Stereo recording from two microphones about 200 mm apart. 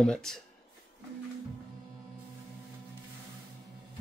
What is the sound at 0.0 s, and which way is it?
Speech, 5° left (ahead or behind).